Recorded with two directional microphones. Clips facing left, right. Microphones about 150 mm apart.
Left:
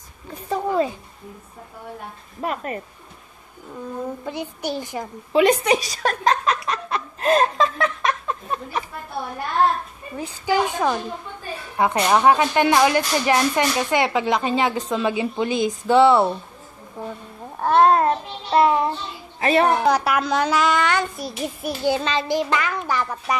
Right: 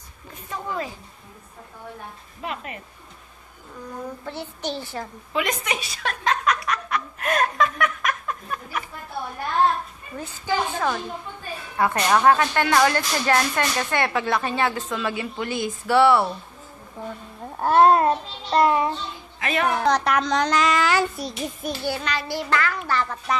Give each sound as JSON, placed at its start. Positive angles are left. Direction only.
{"t": 0.5, "sound": "speech", "side_deg": 30}
{"t": 2.4, "sound": "speech", "side_deg": 45}
{"t": 4.2, "sound": "speech", "side_deg": 15}
{"t": 5.3, "sound": "a sound", "side_deg": 30}
{"t": 10.1, "sound": "speech", "side_deg": 10}
{"t": 17.6, "sound": "a child's voice", "side_deg": -5}
{"t": 18.5, "sound": "child singing", "side_deg": 0}
{"t": 19.4, "sound": "a woman's voice", "side_deg": 35}
{"t": 19.8, "sound": "child singing", "side_deg": 5}
{"t": 21.8, "sound": "speech", "side_deg": 20}